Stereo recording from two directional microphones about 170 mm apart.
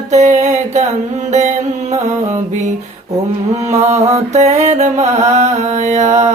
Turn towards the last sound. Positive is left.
turn(degrees=-45)  # may be behind; listen again after turning